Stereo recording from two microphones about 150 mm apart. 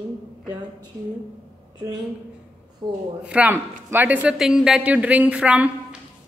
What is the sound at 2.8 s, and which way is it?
Speech, 35° right (ahead or behind).